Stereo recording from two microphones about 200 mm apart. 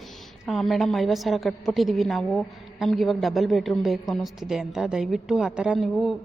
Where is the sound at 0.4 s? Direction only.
Centre (ahead or behind).